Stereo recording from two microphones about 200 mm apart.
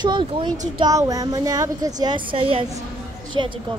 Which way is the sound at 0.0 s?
25° right (ahead or behind).